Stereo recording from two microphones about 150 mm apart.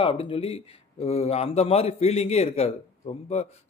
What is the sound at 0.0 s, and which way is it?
Speech, 35° left (ahead or behind).